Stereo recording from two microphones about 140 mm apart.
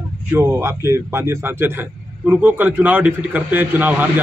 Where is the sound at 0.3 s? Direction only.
20° right (ahead or behind).